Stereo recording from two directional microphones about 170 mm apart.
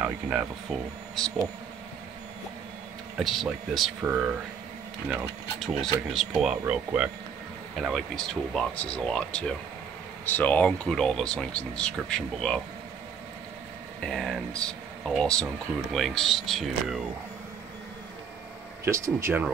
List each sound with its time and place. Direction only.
0.0 s speech: 5° right (ahead or behind)
3.2 s speech: centre (ahead or behind)
5.1 s speech: centre (ahead or behind)
7.7 s speech: centre (ahead or behind)
14.0 s speech: centre (ahead or behind)
18.9 s speech: 15° right (ahead or behind)